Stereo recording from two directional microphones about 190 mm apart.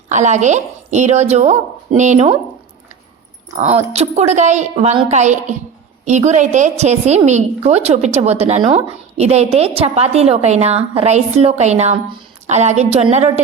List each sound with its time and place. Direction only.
0.1 s a woman's voice: 40° right (ahead or behind)
3.5 s a woman's voice: 35° right (ahead or behind)